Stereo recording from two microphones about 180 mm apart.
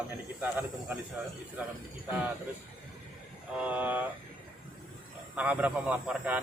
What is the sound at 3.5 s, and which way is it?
Speech, 5° right (ahead or behind).